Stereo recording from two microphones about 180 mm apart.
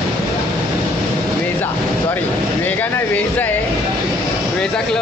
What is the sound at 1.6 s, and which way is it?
Vehicle, 10° left (ahead or behind).